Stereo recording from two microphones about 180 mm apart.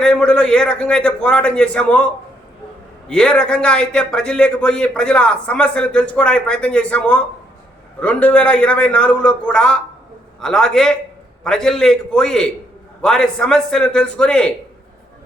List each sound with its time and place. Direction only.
0.0 s a man's voice: 5° left (ahead or behind)
3.1 s a man's voice: 5° left (ahead or behind)